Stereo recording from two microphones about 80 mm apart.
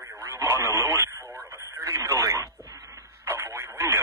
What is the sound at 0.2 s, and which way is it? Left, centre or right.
Radio, right.